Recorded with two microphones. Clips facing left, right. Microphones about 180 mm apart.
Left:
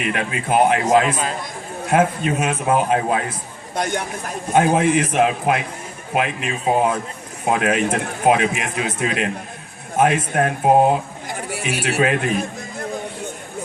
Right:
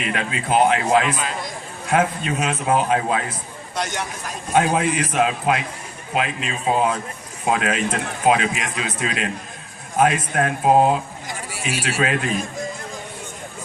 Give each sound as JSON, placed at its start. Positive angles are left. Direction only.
{"t": 0.5, "sound": "a man's voice", "side_deg": 45}